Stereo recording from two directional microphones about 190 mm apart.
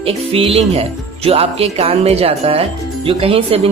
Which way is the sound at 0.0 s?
30° right (ahead or behind).